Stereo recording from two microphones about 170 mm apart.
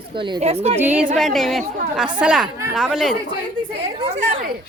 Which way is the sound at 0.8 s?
10° right (ahead or behind).